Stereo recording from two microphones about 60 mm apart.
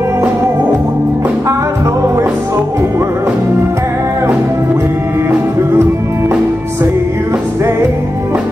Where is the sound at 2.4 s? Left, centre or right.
Right.